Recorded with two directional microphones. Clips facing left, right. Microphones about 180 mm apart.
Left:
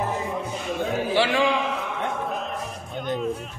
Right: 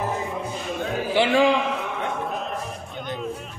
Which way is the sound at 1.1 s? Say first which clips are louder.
Right 3 dB; 20° right (ahead or behind).